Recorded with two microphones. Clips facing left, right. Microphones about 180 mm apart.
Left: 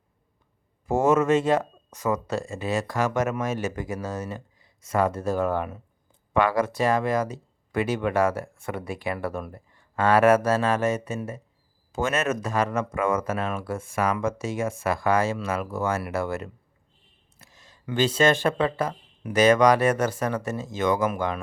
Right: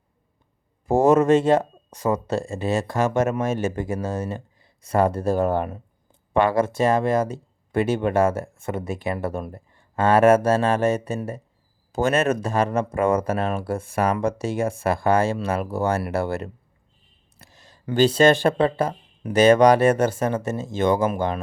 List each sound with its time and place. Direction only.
0.9 s speech: 35° right (ahead or behind)